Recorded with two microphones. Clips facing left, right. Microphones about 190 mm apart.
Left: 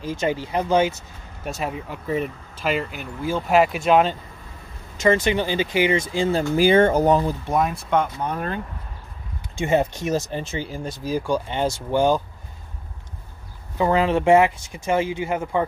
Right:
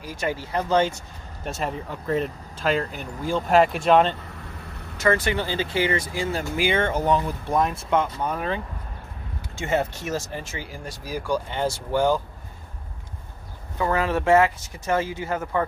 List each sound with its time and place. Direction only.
0.0 s speech: 25° left (ahead or behind); by 4.2 s 5° left (ahead or behind)
4.9 s speech: 20° left (ahead or behind); by 7.3 s 40° left (ahead or behind)
7.4 s speech: 5° left (ahead or behind)
9.6 s speech: 15° left (ahead or behind)
13.7 s speech: 20° left (ahead or behind)